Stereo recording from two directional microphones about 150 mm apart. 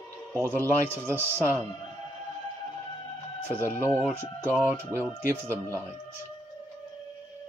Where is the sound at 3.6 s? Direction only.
15° left (ahead or behind).